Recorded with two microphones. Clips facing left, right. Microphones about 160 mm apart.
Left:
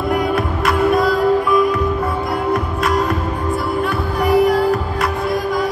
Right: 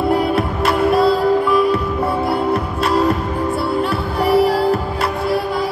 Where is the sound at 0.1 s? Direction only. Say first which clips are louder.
Right 1 dB; 30° right (ahead or behind).